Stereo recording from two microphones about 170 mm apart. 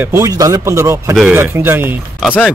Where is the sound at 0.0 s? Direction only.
15° right (ahead or behind).